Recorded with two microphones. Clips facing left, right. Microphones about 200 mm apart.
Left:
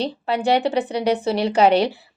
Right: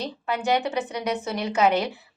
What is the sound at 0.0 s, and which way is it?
A woman's voice, 30° left (ahead or behind).